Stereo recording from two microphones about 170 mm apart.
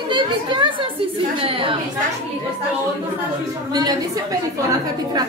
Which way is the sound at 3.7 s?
25° right (ahead or behind).